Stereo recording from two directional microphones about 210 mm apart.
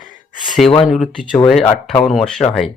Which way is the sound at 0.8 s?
Centre (ahead or behind).